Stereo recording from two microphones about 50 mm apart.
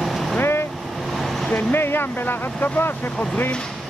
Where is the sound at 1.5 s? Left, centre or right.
Left.